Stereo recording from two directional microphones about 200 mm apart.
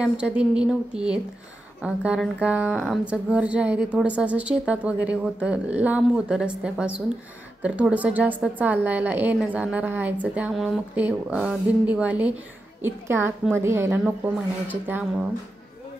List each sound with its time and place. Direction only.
0.0 s a woman's voice: 5° right (ahead or behind)